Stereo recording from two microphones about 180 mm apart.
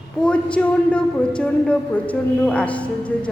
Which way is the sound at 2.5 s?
5° left (ahead or behind).